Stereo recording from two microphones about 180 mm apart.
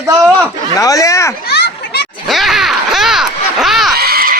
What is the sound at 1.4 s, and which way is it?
Children playing, 60° left (ahead or behind).